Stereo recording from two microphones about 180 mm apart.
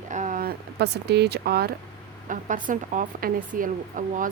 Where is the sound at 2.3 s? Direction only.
45° right (ahead or behind).